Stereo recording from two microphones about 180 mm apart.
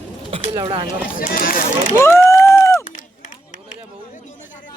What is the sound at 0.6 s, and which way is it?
Speech, 25° right (ahead or behind).